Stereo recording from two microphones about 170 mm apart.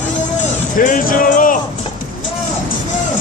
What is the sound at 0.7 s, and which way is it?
Music, 50° left (ahead or behind).